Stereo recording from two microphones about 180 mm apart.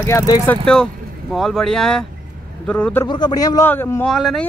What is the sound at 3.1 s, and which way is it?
Speech, 25° left (ahead or behind).